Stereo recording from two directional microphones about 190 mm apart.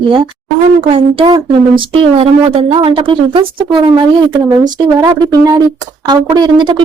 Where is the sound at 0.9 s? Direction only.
30° right (ahead or behind).